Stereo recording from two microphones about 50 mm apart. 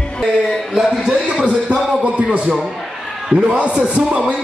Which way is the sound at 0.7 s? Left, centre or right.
Centre.